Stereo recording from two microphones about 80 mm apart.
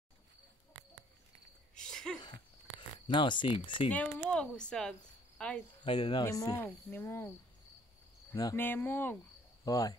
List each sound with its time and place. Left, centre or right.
1.8 s sneeze: centre
3.1 s speech: left
3.9 s speech: centre
5.9 s speech: left
6.2 s speech: left
6.5 s cricket: left
8.5 s cricket: left
9.7 s speech: left